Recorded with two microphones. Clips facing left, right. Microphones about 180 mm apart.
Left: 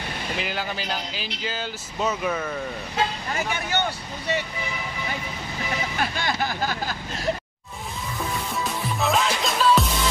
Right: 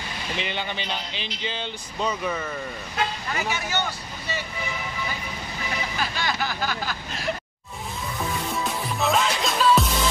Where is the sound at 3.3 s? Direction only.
55° left (ahead or behind).